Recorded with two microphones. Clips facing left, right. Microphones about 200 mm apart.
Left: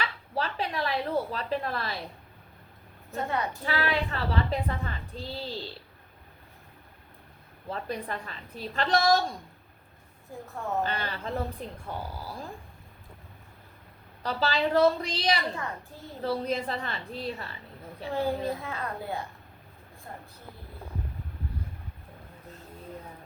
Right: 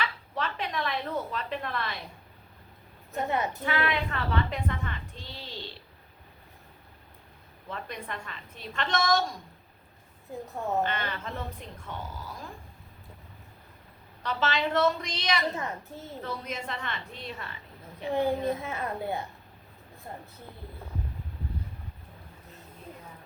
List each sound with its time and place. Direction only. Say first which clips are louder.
0.0 s a woman's voice: left 1 dB; 35° left (ahead or behind)
3.1 s a child's voice: right 1 dB; 20° right (ahead or behind)
3.7 s a woman's voice: left 1 dB; 35° left (ahead or behind)
7.7 s a woman's voice: left 4 dB; 35° left (ahead or behind)
10.4 s a child's voice: right 2 dB; 20° right (ahead or behind)
10.8 s a woman's voice: even; 35° left (ahead or behind)
14.2 s a woman's voice: left 1 dB; 35° left (ahead or behind)
15.5 s a child's voice: right 2 dB; 20° right (ahead or behind)
16.2 s a woman's voice: left 9 dB; 35° left (ahead or behind)
18.1 s a child's voice: right 2 dB; 20° right (ahead or behind)